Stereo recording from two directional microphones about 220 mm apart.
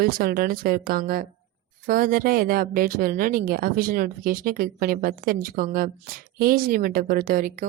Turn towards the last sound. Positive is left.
turn(degrees=-40)  # may be behind; listen again after turning